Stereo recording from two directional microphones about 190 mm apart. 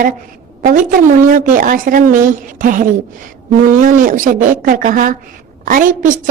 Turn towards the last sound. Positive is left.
turn(degrees=-45)  # may be behind; listen again after turning